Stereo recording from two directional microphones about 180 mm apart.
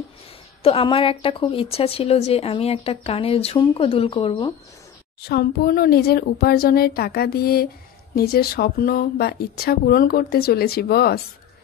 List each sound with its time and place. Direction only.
0.6 s speech: 30° left (ahead or behind)
5.2 s speech: 60° left (ahead or behind)